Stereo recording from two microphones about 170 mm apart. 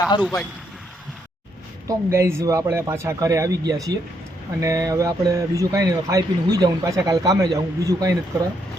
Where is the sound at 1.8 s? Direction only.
20° right (ahead or behind).